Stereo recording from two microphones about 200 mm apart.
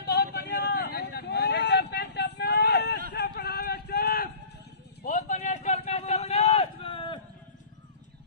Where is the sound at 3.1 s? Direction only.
60° left (ahead or behind).